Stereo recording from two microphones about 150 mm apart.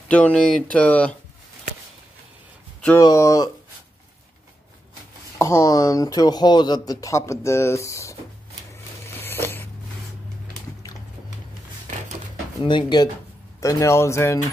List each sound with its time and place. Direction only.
0.1 s speech: 10° left (ahead or behind)
3.0 s speech: 25° left (ahead or behind)
5.4 s speech: 20° left (ahead or behind)
9.2 s biting: 15° left (ahead or behind)
12.6 s speech: 30° left (ahead or behind)
13.6 s speech: 20° left (ahead or behind)